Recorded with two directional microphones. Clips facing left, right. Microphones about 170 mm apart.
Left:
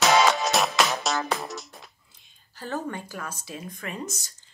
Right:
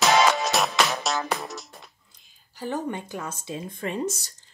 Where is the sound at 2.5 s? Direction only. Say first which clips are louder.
Right 2 dB; 15° right (ahead or behind).